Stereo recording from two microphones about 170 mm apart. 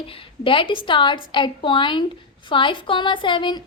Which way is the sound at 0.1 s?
30° left (ahead or behind).